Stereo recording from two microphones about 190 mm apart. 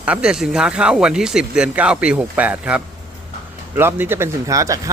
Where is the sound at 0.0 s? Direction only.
5° right (ahead or behind).